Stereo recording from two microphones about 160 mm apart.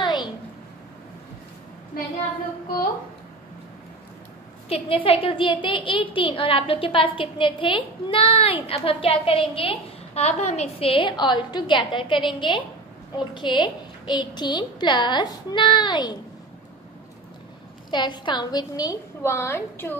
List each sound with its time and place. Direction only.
0.0 s a sound: 25° left (ahead or behind)
4.6 s a woman's voice: 35° left (ahead or behind)
17.9 s a woman's voice: 30° left (ahead or behind)